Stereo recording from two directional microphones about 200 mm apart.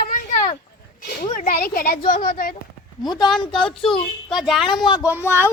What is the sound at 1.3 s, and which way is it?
A child's voice, 40° left (ahead or behind).